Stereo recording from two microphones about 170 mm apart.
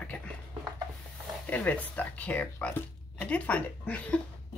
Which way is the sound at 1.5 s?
10° left (ahead or behind).